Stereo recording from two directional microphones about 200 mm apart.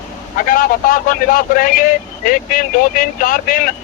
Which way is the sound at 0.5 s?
45° left (ahead or behind).